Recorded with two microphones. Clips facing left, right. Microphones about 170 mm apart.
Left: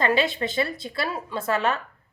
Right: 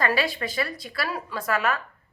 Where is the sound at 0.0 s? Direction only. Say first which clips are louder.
Left 3 dB; 20° left (ahead or behind).